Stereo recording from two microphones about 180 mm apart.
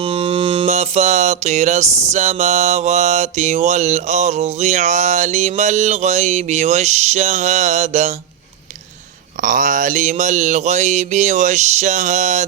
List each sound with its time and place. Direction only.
0.0 s music: 30° right (ahead or behind)
9.4 s music: 45° right (ahead or behind)